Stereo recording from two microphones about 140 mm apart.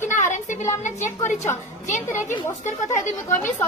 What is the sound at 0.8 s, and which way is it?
Speech, 60° left (ahead or behind).